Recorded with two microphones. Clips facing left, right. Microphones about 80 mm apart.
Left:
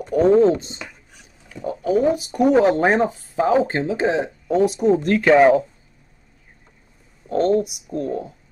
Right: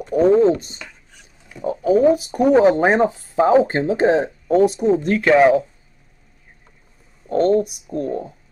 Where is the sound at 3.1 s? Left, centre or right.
Right.